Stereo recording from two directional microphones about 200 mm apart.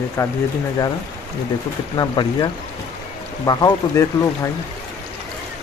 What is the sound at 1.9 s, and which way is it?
Speech, 20° left (ahead or behind).